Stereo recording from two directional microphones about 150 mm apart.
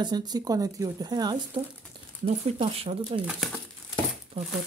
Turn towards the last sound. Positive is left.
turn(degrees=-40)  # may be behind; listen again after turning